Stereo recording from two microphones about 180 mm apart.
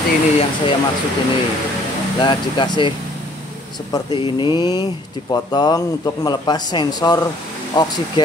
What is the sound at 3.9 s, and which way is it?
Speech, 25° left (ahead or behind).